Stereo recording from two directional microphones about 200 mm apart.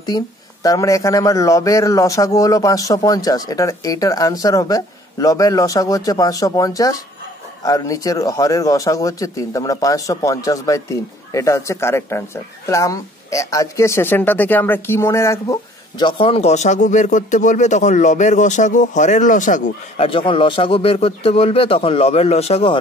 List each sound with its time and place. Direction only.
0.0 s speech: 20° left (ahead or behind); by 20.1 s 40° left (ahead or behind)
20.1 s a man's voice: 25° left (ahead or behind)